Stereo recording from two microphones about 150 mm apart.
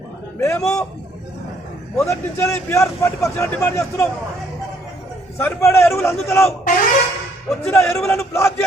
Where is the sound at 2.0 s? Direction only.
20° left (ahead or behind).